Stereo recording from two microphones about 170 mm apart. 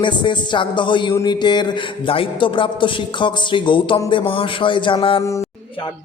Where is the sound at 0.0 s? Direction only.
30° left (ahead or behind).